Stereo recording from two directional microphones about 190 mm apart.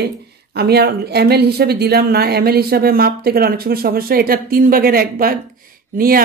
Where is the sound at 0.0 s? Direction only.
60° right (ahead or behind).